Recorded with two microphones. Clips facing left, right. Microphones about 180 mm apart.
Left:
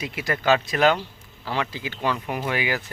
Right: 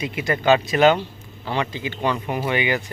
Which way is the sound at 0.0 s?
Centre (ahead or behind).